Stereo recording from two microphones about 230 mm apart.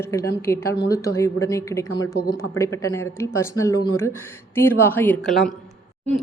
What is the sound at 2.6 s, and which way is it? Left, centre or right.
A woman's voice, centre.